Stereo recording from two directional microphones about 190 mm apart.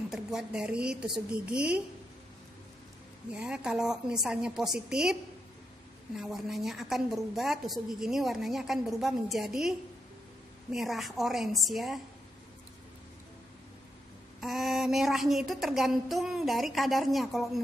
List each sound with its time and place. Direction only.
0.1 s a woman's voice: 5° right (ahead or behind)
3.3 s a woman's voice: 5° right (ahead or behind)
6.1 s a woman's voice: centre (ahead or behind)
14.4 s a woman's voice: centre (ahead or behind)